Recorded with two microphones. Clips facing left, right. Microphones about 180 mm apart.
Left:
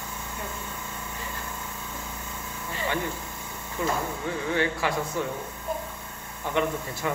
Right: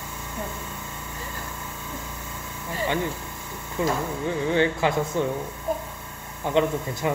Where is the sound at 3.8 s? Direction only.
20° right (ahead or behind).